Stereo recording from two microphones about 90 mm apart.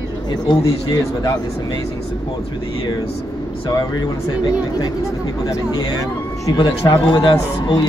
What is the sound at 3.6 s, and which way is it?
Speech, 50° left (ahead or behind).